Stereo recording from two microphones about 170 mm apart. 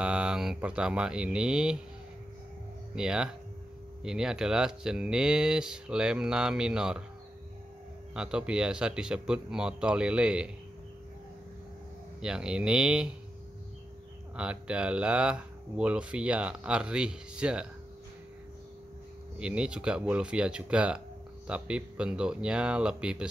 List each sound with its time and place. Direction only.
0.0 s speech: 5° right (ahead or behind)
3.0 s speech: 5° right (ahead or behind)
8.1 s speech: 5° right (ahead or behind)
12.2 s speech: 5° right (ahead or behind)
14.3 s speech: 5° right (ahead or behind)
19.3 s speech: 5° right (ahead or behind)